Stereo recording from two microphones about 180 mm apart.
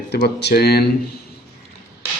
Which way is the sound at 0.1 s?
65° left (ahead or behind).